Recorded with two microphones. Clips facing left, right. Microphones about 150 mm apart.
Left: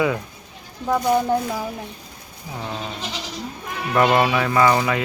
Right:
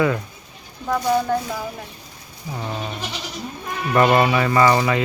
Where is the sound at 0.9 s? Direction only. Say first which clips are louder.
Left 1 dB; 15° left (ahead or behind).